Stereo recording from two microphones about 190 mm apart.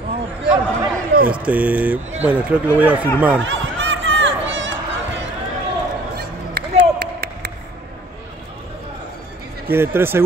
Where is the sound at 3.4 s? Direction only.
75° right (ahead or behind).